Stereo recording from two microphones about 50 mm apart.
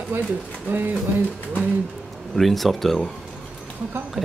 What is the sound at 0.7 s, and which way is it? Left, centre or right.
Speech, right.